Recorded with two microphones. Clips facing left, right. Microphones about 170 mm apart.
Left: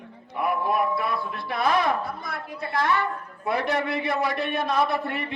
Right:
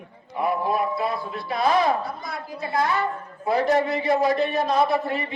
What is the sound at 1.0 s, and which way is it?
Speech, 55° left (ahead or behind).